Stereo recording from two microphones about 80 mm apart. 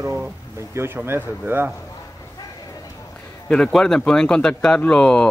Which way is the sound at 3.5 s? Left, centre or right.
Centre.